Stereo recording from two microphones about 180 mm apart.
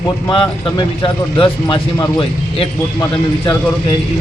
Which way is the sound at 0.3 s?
25° left (ahead or behind).